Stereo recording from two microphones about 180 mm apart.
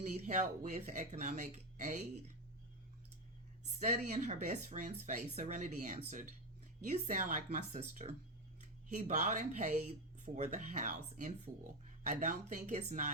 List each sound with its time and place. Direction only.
0.0 s speech: 40° right (ahead or behind)
3.8 s speech: 45° right (ahead or behind)